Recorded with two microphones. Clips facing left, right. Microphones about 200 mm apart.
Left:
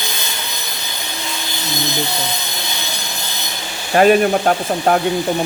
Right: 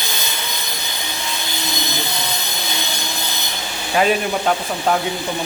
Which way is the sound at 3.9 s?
50° left (ahead or behind).